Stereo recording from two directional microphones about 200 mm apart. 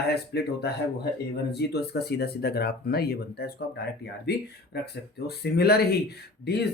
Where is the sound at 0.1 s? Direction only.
55° left (ahead or behind).